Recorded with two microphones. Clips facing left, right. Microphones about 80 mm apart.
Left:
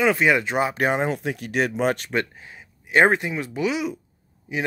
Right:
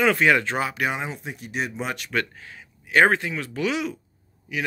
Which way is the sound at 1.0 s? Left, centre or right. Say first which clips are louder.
Left 8 dB; left.